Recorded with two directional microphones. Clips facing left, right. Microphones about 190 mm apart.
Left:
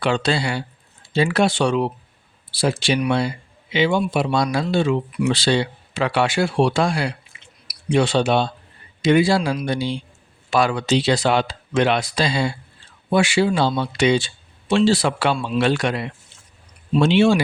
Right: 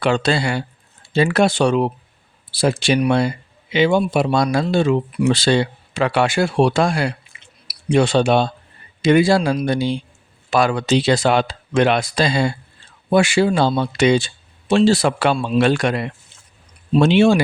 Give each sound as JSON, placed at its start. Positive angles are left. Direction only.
{"t": 0.0, "sound": "speech", "side_deg": -50}